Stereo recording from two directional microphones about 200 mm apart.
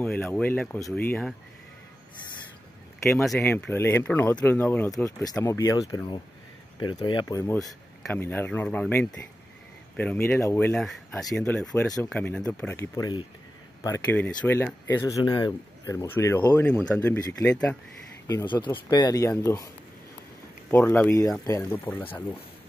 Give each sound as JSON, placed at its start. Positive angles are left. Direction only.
{"t": 0.0, "sound": "speech", "side_deg": 10}
{"t": 3.3, "sound": "speech", "side_deg": 10}
{"t": 7.5, "sound": "speech", "side_deg": 5}
{"t": 20.7, "sound": "speech", "side_deg": 10}